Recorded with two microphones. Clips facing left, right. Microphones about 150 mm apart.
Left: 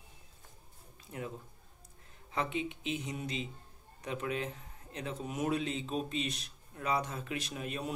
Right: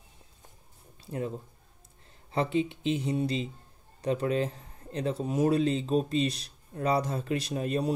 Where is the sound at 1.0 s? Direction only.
35° right (ahead or behind).